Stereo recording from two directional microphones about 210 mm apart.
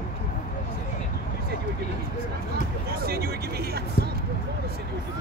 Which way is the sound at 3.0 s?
45° right (ahead or behind).